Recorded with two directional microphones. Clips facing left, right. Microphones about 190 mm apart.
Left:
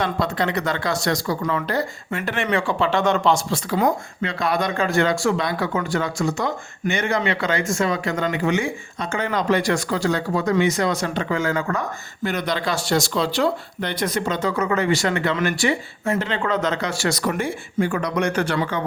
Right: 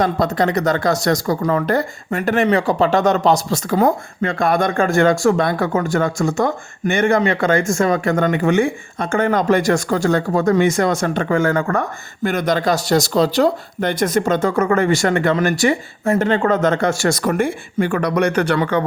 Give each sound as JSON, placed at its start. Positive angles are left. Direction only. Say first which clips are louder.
{"t": 0.0, "sound": "speech", "louder": "right 5 dB", "side_deg": -40}